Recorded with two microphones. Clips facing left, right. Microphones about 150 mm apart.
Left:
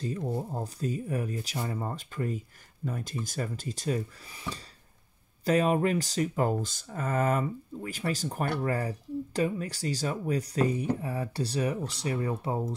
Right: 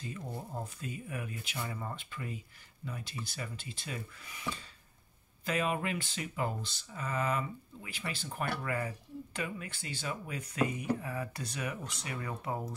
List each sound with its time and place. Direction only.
0.2 s speech: 25° left (ahead or behind)